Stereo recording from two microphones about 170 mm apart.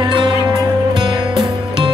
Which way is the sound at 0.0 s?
25° right (ahead or behind).